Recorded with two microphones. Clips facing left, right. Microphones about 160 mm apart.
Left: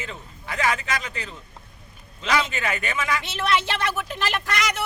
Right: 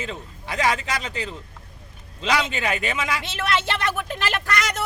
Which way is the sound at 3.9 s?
50° right (ahead or behind).